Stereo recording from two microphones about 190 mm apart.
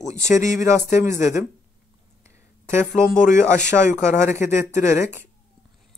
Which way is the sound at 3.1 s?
40° left (ahead or behind).